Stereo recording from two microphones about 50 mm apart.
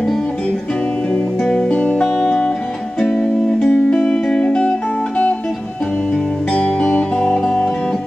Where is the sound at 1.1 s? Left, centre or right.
Centre.